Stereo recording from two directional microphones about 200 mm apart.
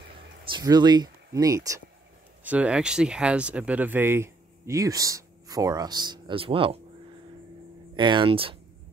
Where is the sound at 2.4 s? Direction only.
5° right (ahead or behind); by 6.8 s 25° right (ahead or behind).